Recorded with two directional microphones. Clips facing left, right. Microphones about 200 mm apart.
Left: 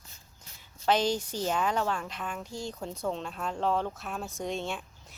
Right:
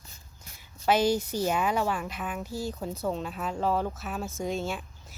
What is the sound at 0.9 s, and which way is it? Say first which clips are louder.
A woman's voice: right 3 dB; 10° right (ahead or behind).